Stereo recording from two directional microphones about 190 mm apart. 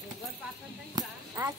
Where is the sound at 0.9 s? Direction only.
20° right (ahead or behind).